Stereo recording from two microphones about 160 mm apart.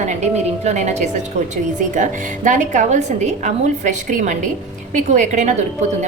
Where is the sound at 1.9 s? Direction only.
50° right (ahead or behind).